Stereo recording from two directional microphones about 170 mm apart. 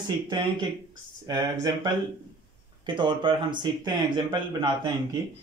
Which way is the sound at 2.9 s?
30° right (ahead or behind).